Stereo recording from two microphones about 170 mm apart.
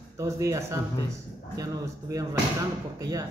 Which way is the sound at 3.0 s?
20° right (ahead or behind).